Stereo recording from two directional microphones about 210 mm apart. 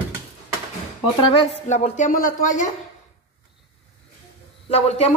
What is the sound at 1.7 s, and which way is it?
Speech, 35° left (ahead or behind).